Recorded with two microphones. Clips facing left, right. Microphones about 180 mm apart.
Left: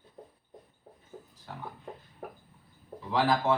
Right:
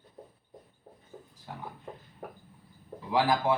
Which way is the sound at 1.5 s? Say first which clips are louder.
Right 1 dB; 10° right (ahead or behind).